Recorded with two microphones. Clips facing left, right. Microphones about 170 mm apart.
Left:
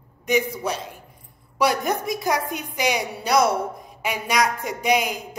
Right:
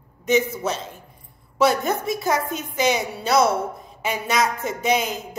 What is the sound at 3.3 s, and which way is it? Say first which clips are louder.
Speech: right 1 dB; 25° right (ahead or behind).